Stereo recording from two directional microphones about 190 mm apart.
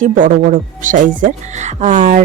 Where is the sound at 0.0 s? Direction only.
45° right (ahead or behind).